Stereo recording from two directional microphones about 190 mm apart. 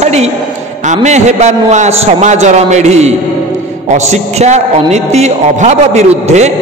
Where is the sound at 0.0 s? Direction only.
35° right (ahead or behind).